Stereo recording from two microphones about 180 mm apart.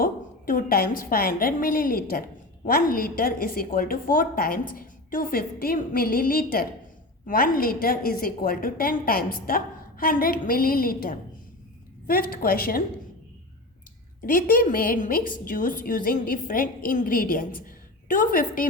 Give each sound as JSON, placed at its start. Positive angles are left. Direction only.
{"t": 0.0, "sound": "a woman's voice", "side_deg": 50}
{"t": 14.3, "sound": "a woman's voice", "side_deg": 50}